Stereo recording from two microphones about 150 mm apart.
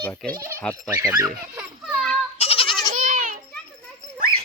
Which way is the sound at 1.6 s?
5° right (ahead or behind).